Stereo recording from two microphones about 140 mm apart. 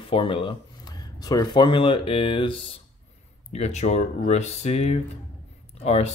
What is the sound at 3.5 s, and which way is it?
Speech, 55° left (ahead or behind).